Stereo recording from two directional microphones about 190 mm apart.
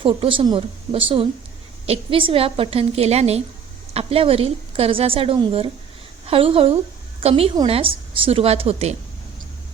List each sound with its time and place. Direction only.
0.0 s a woman's voice: 25° right (ahead or behind)